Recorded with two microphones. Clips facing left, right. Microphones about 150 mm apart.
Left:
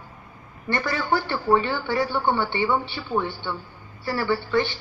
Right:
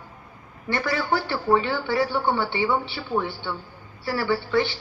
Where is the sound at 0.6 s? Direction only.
10° right (ahead or behind).